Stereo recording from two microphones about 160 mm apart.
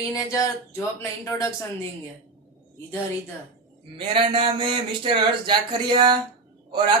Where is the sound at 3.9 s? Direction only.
30° right (ahead or behind).